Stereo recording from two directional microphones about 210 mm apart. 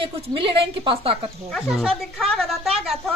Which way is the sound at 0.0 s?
25° right (ahead or behind).